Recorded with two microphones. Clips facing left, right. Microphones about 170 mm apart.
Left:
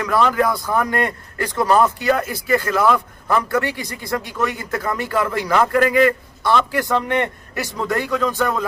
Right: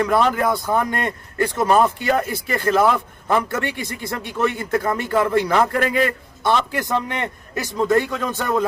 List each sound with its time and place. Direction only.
0.0 s speech: 25° right (ahead or behind)